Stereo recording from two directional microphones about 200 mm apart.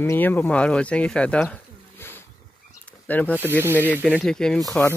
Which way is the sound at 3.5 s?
10° right (ahead or behind).